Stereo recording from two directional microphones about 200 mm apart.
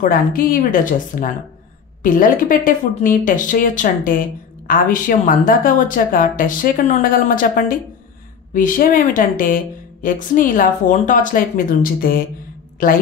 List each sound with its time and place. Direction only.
0.0 s speech: 45° left (ahead or behind)